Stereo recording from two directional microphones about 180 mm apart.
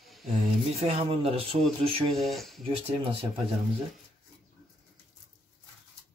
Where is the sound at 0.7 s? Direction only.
35° right (ahead or behind).